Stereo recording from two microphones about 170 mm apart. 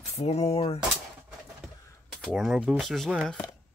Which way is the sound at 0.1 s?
35° left (ahead or behind).